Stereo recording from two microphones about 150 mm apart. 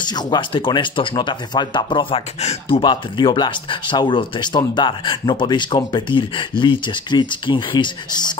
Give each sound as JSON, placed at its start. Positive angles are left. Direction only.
{"t": 0.0, "sound": "speech", "side_deg": 30}